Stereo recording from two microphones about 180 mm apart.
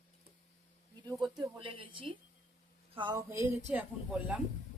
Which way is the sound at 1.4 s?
30° right (ahead or behind).